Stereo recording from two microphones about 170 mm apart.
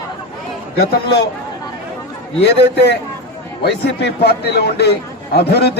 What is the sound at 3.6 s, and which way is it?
A man's voice, 75° left (ahead or behind).